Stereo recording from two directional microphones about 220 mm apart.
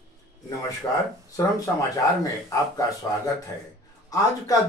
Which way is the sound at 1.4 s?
15° left (ahead or behind).